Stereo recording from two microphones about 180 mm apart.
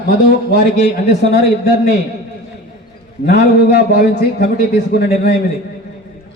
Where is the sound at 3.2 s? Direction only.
65° left (ahead or behind).